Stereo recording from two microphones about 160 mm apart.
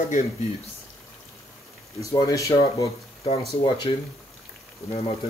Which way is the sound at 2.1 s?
20° left (ahead or behind).